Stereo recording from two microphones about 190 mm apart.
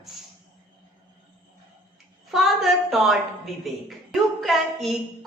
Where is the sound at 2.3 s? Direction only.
Centre (ahead or behind).